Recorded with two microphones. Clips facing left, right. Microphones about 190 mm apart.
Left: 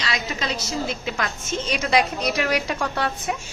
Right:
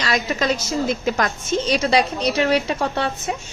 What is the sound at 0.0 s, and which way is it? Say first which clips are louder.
A woman's voice: right 6 dB; 45° right (ahead or behind).